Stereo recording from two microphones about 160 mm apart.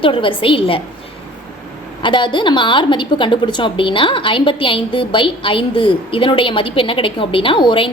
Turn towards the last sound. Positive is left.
turn(degrees=30)  # may be behind; listen again after turning